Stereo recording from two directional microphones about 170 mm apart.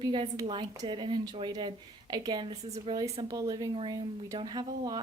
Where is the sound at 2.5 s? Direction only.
40° right (ahead or behind).